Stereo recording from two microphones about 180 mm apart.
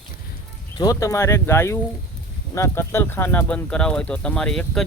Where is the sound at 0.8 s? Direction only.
20° left (ahead or behind).